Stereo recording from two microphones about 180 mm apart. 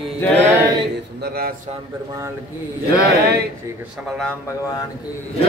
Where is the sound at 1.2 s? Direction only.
60° right (ahead or behind).